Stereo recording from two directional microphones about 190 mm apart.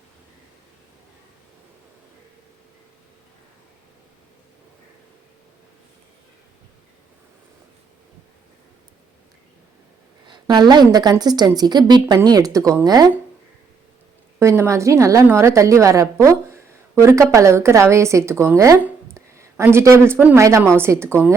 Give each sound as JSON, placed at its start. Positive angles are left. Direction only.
{"t": 10.2, "sound": "a woman's voice", "side_deg": -25}
{"t": 14.3, "sound": "a woman's voice", "side_deg": -15}